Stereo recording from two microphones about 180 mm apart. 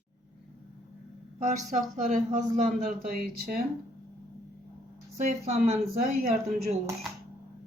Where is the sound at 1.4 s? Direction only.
40° right (ahead or behind).